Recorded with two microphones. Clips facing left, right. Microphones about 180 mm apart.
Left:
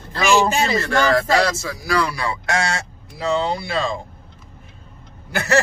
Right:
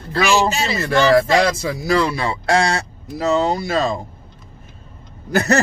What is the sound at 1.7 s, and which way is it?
Speech, 25° right (ahead or behind).